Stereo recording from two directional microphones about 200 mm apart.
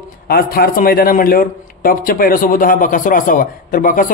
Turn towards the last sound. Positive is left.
turn(degrees=45)  # may be behind; listen again after turning